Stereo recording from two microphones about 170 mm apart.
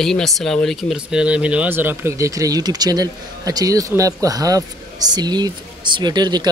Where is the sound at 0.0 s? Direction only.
Centre (ahead or behind).